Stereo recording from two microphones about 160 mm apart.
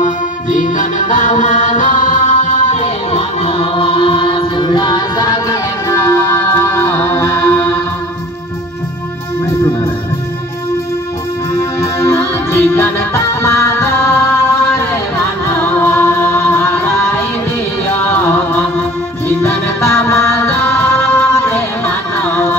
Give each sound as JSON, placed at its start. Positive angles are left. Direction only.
{"t": 0.0, "sound": "music", "side_deg": 55}
{"t": 11.8, "sound": "music", "side_deg": 20}
{"t": 19.2, "sound": "music", "side_deg": 15}